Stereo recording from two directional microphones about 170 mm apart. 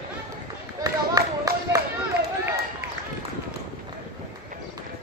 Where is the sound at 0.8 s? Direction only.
20° right (ahead or behind).